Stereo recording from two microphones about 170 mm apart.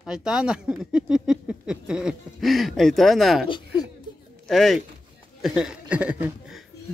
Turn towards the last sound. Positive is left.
turn(degrees=-5)  # may be behind; listen again after turning